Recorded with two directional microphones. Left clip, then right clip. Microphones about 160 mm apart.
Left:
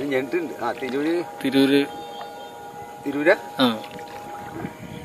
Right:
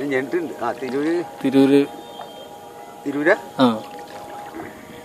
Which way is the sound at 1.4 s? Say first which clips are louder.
Right 4 dB; 25° right (ahead or behind).